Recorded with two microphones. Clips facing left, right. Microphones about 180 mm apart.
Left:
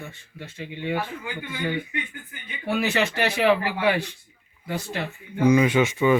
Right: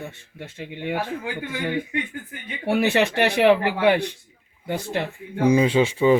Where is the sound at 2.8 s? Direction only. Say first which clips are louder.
Right 4 dB; 60° right (ahead or behind).